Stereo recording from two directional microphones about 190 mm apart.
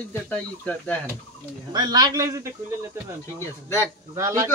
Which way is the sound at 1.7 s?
20° right (ahead or behind).